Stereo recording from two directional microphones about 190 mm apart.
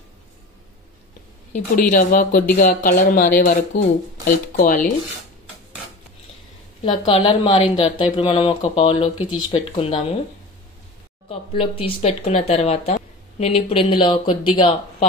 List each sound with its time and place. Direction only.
1.5 s speech: 45° left (ahead or behind)
6.8 s speech: 30° left (ahead or behind)
11.2 s speech: 30° left (ahead or behind)